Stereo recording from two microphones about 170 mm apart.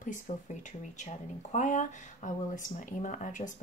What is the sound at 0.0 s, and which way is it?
Speech, 50° left (ahead or behind).